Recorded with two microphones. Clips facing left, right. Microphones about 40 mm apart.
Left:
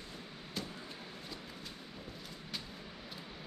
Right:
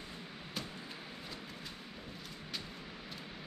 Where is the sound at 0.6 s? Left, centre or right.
Centre.